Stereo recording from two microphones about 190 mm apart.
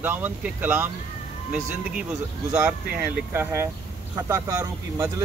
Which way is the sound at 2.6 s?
10° right (ahead or behind).